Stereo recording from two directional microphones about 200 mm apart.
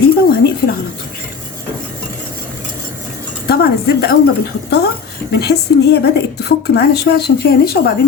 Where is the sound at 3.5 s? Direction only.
50° left (ahead or behind).